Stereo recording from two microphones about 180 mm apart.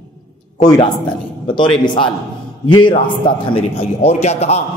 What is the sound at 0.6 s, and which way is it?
A man's voice, 25° left (ahead or behind).